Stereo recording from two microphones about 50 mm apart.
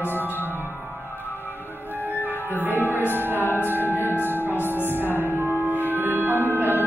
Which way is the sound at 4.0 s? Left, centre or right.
Left.